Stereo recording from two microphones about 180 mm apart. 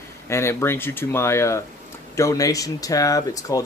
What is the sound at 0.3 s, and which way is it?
Speech, 15° left (ahead or behind).